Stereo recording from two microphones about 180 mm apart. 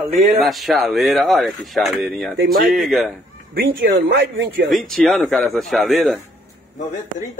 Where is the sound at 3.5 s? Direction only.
55° right (ahead or behind).